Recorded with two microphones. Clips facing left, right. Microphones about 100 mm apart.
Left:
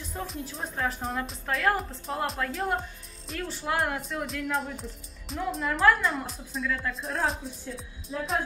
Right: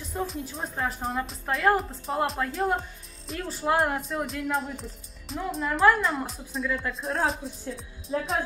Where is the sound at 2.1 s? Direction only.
20° right (ahead or behind).